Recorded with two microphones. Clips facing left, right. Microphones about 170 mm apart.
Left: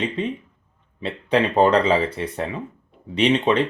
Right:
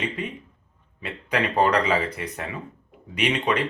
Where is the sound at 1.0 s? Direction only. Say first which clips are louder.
Left 6 dB; 25° left (ahead or behind).